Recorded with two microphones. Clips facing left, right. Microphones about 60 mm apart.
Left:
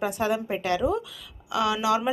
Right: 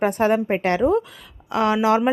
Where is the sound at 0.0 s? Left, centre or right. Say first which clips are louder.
Right 7 dB; right.